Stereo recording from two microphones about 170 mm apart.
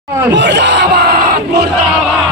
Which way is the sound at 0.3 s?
90° right.